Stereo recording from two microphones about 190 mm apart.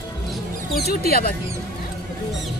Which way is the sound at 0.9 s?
50° left (ahead or behind).